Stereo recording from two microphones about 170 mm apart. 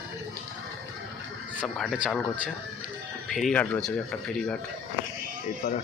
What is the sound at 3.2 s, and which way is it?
Speech, centre (ahead or behind).